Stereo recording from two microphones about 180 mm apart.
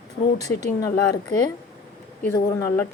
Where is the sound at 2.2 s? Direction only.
15° left (ahead or behind).